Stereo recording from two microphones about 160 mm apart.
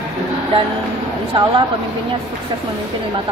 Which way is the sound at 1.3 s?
30° right (ahead or behind).